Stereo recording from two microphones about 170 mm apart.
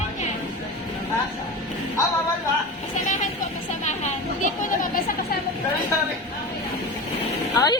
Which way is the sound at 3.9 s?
45° left (ahead or behind).